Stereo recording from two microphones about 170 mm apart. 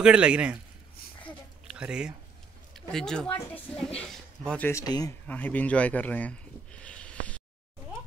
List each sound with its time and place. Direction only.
0.0 s speech: 5° right (ahead or behind)
1.7 s a woman's voice: 5° right (ahead or behind); by 5.1 s 20° left (ahead or behind)
5.2 s a sound: 10° left (ahead or behind)